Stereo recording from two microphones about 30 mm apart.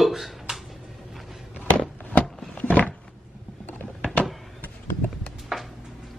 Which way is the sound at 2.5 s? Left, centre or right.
Left.